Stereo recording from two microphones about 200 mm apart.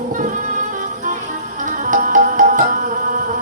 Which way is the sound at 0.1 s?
40° right (ahead or behind).